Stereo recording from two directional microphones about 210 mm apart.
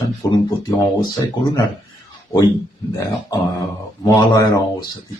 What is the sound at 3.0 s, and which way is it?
Speech, 15° left (ahead or behind).